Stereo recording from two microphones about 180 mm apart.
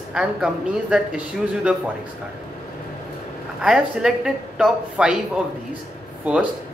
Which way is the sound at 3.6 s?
5° right (ahead or behind).